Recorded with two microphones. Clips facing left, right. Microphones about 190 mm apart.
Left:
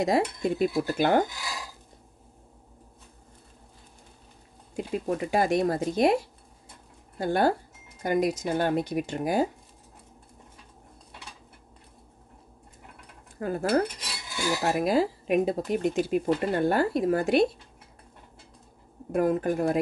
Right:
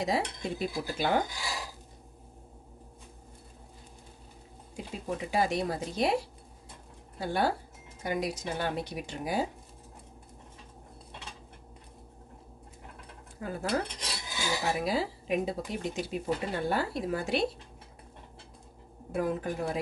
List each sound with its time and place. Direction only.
0.0 s speech: 50° left (ahead or behind)
4.7 s speech: 55° left (ahead or behind)
7.2 s speech: 50° left (ahead or behind)
13.4 s speech: 50° left (ahead or behind)
19.1 s speech: 50° left (ahead or behind)